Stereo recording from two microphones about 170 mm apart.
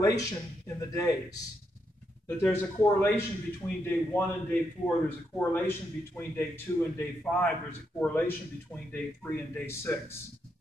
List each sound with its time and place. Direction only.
0.0 s a man's voice: 20° left (ahead or behind)